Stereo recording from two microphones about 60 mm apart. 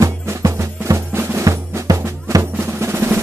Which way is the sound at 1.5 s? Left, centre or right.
Right.